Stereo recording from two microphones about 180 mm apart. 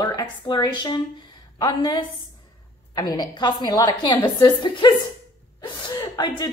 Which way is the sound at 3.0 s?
20° left (ahead or behind).